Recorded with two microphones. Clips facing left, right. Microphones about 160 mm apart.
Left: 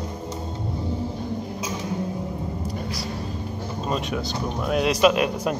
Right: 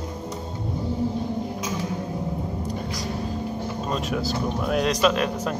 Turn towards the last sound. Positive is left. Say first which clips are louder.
# left 2 dB
turn(degrees=10)  # may be behind; listen again after turning